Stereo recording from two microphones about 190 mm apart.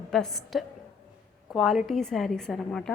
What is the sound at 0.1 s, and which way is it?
A woman's voice, centre (ahead or behind).